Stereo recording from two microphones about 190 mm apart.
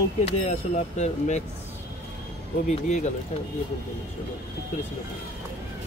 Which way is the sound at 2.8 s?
40° left (ahead or behind).